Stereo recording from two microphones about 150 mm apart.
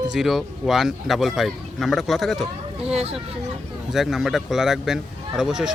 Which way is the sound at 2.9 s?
40° right (ahead or behind).